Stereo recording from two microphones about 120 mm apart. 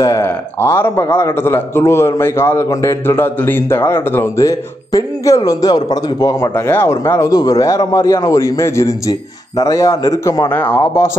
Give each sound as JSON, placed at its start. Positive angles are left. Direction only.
{"t": 0.0, "sound": "a man's voice", "side_deg": 25}
{"t": 6.5, "sound": "a man's voice", "side_deg": 20}
{"t": 10.5, "sound": "a man's voice", "side_deg": 15}